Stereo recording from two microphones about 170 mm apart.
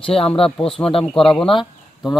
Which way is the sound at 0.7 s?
5° left (ahead or behind).